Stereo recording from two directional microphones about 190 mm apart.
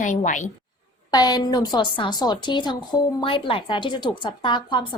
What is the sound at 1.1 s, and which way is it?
A woman's voice, 20° left (ahead or behind).